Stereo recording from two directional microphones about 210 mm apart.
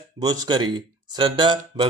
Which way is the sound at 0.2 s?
20° right (ahead or behind).